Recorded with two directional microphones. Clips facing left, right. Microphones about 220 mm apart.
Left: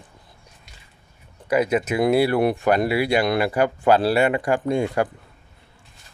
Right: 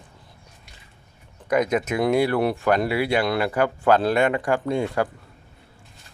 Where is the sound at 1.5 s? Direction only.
5° left (ahead or behind).